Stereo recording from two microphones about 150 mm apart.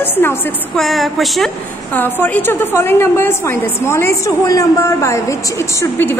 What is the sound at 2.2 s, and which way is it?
A woman's voice, 15° left (ahead or behind).